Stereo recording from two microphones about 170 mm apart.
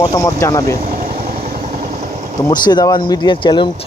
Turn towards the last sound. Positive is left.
turn(degrees=30)  # may be behind; listen again after turning